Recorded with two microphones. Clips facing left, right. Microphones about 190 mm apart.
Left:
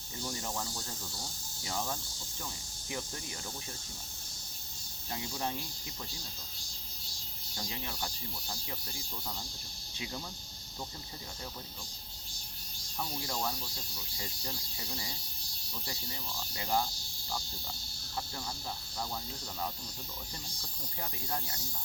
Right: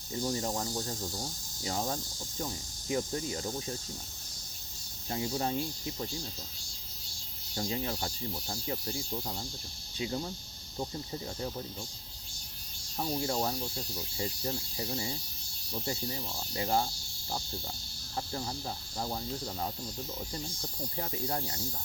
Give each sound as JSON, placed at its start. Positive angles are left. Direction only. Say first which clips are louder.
{"t": 0.1, "sound": "speech", "louder": "right 7 dB", "side_deg": -30}
{"t": 5.1, "sound": "speech", "louder": "right 5 dB", "side_deg": -35}
{"t": 7.5, "sound": "speech", "louder": "right 8 dB", "side_deg": -30}
{"t": 13.0, "sound": "speech", "louder": "right 6 dB", "side_deg": -30}
{"t": 18.9, "sound": "speech", "louder": "right 4 dB", "side_deg": -30}
{"t": 21.0, "sound": "speech", "louder": "right 4 dB", "side_deg": -30}